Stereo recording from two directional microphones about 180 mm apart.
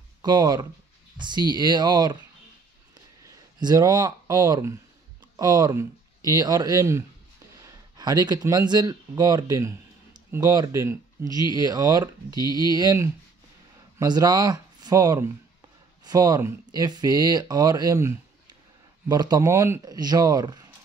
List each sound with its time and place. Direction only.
0.2 s speech: 20° right (ahead or behind)
3.5 s speech: 20° right (ahead or behind)
12.4 s speech: 25° left (ahead or behind)
12.7 s speech: 20° right (ahead or behind)